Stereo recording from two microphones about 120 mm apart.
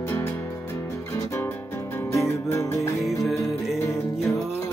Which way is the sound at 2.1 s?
25° left (ahead or behind).